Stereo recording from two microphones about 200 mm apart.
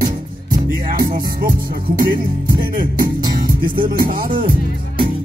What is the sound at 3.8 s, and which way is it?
Music, 45° right (ahead or behind).